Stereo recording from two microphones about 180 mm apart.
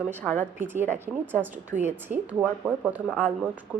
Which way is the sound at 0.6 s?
10° right (ahead or behind).